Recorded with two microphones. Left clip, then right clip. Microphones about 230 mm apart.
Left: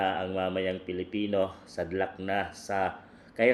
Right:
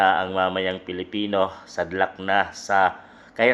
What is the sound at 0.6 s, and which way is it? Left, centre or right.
Speech, right.